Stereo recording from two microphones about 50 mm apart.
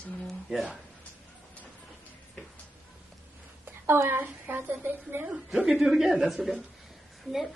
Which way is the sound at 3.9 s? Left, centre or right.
Right.